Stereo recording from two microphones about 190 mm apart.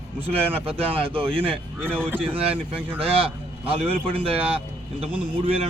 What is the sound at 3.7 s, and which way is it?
A man's voice, 30° right (ahead or behind).